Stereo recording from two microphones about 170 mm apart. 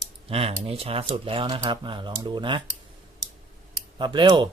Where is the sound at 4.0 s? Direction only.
25° right (ahead or behind).